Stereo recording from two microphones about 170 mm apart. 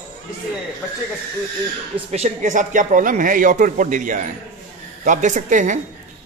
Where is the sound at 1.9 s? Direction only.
40° right (ahead or behind).